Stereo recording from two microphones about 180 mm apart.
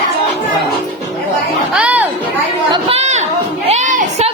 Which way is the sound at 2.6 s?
30° right (ahead or behind).